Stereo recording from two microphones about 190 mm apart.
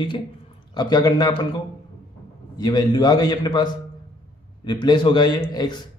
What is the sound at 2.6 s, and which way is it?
A man's voice, 20° left (ahead or behind).